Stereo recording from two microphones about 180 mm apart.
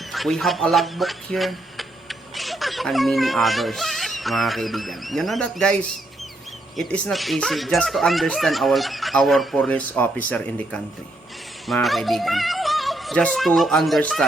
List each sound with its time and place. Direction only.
0.1 s speech: centre (ahead or behind)
6.7 s speech: centre (ahead or behind)